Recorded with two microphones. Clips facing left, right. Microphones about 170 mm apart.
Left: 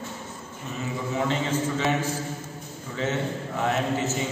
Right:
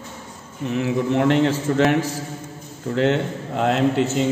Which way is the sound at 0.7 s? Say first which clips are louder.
Right 10 dB; 70° right (ahead or behind).